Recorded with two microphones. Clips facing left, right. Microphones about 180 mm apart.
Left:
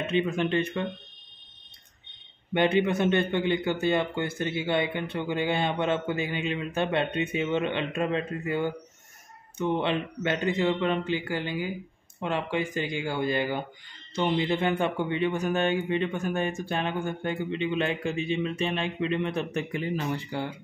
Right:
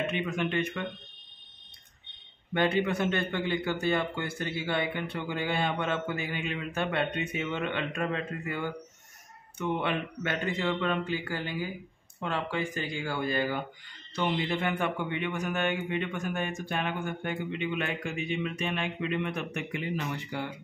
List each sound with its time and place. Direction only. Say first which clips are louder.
0.1 s a man's voice: left 5 dB; 30° left (ahead or behind)
2.5 s a man's voice: left 3 dB; 20° left (ahead or behind)